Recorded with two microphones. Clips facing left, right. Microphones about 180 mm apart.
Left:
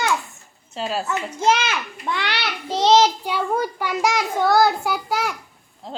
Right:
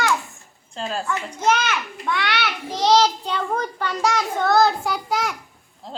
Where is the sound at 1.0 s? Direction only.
30° left (ahead or behind).